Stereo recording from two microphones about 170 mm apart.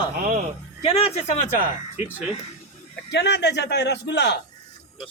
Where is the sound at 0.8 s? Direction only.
35° left (ahead or behind).